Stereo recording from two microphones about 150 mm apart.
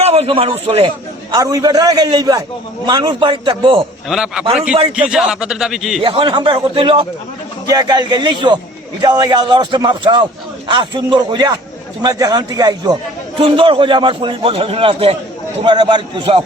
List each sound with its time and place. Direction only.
0.0 s a man's voice: 45° right (ahead or behind)
1.3 s a man's voice: 25° right (ahead or behind)
4.1 s speech: 5° right (ahead or behind)
6.0 s a man's voice: 35° right (ahead or behind)